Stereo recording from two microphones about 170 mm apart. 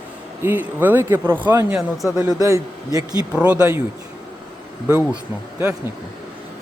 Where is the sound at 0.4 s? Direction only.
10° right (ahead or behind).